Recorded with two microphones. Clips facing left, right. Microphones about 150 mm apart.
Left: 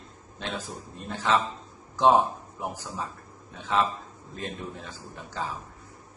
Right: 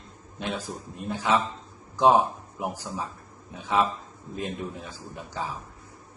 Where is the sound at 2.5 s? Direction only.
15° right (ahead or behind).